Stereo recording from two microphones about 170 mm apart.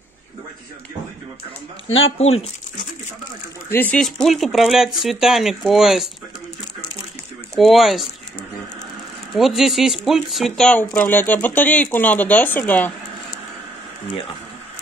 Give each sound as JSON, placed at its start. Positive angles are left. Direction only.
{"t": 2.2, "sound": "speech", "side_deg": 40}
{"t": 3.7, "sound": "speech", "side_deg": 5}
{"t": 7.5, "sound": "speech", "side_deg": 0}
{"t": 9.3, "sound": "speech", "side_deg": 0}